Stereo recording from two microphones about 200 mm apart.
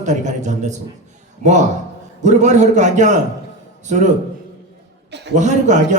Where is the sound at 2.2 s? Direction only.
35° right (ahead or behind).